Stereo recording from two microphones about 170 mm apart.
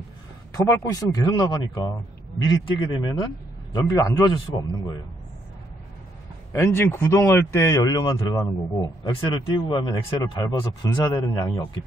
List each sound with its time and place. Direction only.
0.7 s speech: 20° left (ahead or behind)
6.5 s speech: 15° left (ahead or behind)